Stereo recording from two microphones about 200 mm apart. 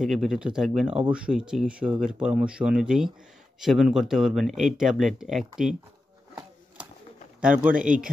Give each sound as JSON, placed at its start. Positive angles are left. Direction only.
{"t": 0.0, "sound": "speech", "side_deg": 0}
{"t": 6.8, "sound": "bird", "side_deg": -5}
{"t": 7.8, "sound": "speech", "side_deg": -40}